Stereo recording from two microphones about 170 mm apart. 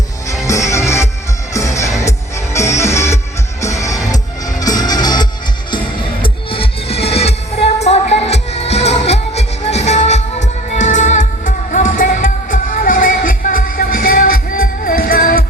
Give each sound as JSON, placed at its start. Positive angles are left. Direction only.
{"t": 0.4, "sound": "music", "side_deg": 20}